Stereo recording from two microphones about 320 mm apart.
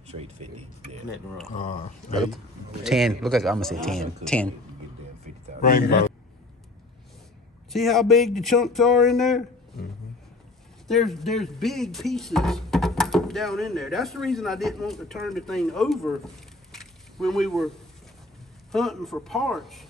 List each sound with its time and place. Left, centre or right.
0.1 s speech: centre
1.5 s speech: left
2.1 s speech: centre
5.6 s speech: left
7.7 s speech: centre
10.9 s speech: centre
16.7 s a sound: centre
18.7 s speech: centre